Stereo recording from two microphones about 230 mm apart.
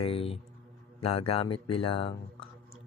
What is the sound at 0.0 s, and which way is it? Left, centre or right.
Speech, left.